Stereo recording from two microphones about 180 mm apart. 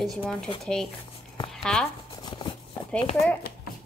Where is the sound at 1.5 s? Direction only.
5° left (ahead or behind).